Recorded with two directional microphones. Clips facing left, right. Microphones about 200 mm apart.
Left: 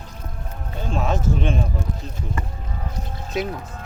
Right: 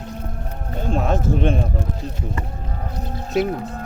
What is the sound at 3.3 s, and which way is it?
Speech, 60° right (ahead or behind).